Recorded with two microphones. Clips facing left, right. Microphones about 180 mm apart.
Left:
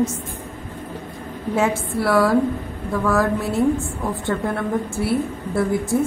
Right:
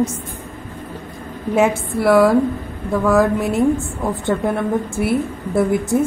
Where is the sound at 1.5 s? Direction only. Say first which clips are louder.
Right 4 dB; 15° right (ahead or behind).